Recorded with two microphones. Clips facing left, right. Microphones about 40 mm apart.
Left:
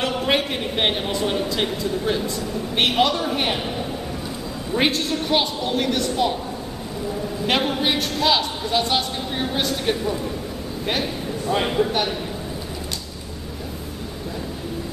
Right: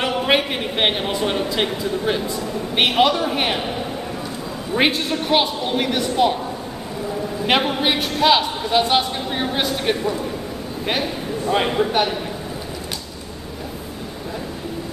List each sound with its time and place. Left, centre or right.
0.0 s a man's voice: centre
7.4 s a man's voice: centre